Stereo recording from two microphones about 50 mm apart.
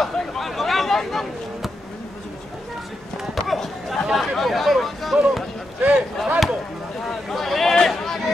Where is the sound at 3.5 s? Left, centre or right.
Centre.